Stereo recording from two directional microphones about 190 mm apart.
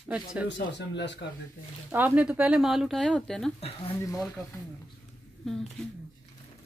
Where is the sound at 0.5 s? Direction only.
65° left (ahead or behind).